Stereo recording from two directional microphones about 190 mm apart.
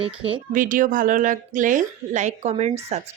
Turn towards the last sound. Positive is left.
turn(degrees=-35)  # may be behind; listen again after turning